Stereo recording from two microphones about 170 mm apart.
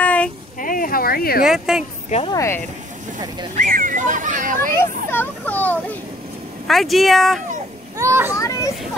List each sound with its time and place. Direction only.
0.0 s a sound: 10° left (ahead or behind)
0.6 s a sound: 55° left (ahead or behind)
1.4 s speech: 5° right (ahead or behind)
2.0 s speech: 35° left (ahead or behind)
2.3 s speech: 15° left (ahead or behind)
3.5 s speech: 50° right (ahead or behind)
4.7 s speech: 10° left (ahead or behind)
8.0 s a child's voice: 15° right (ahead or behind)
8.3 s speech: 20° left (ahead or behind)